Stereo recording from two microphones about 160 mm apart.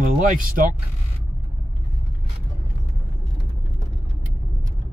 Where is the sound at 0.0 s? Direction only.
60° right (ahead or behind).